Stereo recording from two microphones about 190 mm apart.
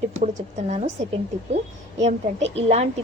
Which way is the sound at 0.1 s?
40° right (ahead or behind).